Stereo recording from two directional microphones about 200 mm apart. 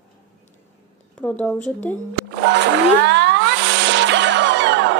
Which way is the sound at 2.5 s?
60° right (ahead or behind).